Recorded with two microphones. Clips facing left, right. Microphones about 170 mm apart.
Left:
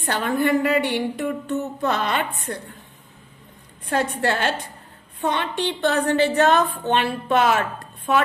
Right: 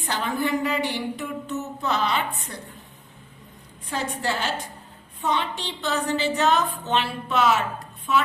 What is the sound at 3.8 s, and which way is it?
A woman's voice, 60° left (ahead or behind).